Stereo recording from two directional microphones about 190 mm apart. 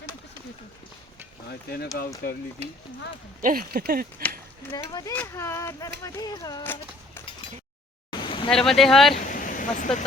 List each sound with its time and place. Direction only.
2.0 s speech: 55° left (ahead or behind)
3.4 s speech: 50° right (ahead or behind)
4.7 s speech: 20° left (ahead or behind)
8.1 s a sound: 25° left (ahead or behind)
8.4 s speech: centre (ahead or behind)
9.2 s a sound: 45° left (ahead or behind)